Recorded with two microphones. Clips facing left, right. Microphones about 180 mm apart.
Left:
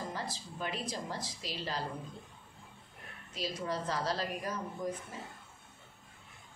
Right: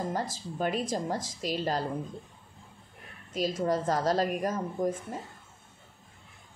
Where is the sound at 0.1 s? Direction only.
45° right (ahead or behind).